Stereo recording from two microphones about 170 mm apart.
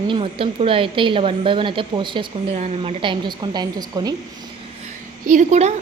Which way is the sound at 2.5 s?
40° right (ahead or behind).